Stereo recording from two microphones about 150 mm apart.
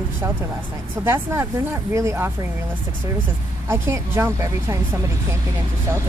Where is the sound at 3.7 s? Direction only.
15° right (ahead or behind).